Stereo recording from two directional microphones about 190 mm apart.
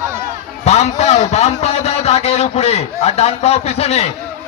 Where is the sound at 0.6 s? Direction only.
35° left (ahead or behind).